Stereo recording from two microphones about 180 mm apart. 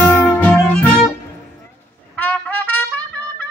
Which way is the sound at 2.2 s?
10° left (ahead or behind).